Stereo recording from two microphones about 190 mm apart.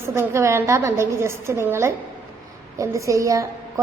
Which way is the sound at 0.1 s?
15° right (ahead or behind).